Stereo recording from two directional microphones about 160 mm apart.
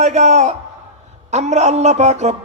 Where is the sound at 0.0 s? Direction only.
45° right (ahead or behind).